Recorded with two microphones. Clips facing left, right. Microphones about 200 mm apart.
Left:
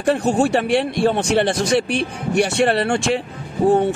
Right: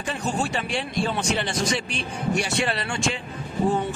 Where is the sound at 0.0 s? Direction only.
65° left (ahead or behind).